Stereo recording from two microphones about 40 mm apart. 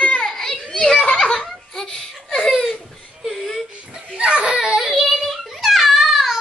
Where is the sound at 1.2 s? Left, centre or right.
Centre.